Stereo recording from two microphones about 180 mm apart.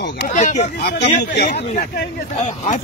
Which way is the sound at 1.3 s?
60° left (ahead or behind).